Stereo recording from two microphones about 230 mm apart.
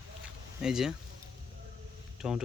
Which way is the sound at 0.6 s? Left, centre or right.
Centre.